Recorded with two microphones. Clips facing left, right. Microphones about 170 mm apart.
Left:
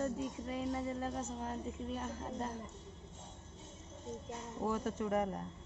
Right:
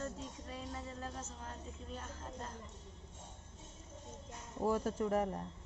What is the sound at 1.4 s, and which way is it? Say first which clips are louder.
Speech: left 8 dB; 10° left (ahead or behind).